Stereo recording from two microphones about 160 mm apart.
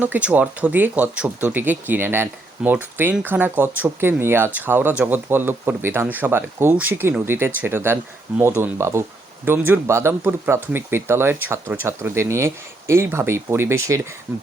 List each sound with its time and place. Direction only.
0.0 s speech: 10° right (ahead or behind)